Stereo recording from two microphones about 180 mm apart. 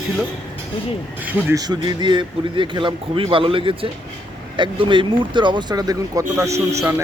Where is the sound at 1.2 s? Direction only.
10° right (ahead or behind).